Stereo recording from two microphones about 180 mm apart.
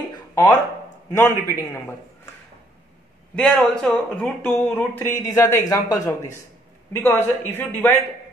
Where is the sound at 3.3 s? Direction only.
Centre (ahead or behind).